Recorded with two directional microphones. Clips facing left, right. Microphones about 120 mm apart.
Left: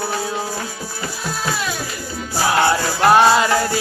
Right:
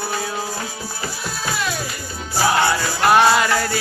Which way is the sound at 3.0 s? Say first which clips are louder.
Left 2 dB; 30° left (ahead or behind).